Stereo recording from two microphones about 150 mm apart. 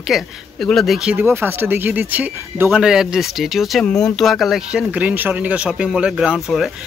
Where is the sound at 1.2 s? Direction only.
15° right (ahead or behind).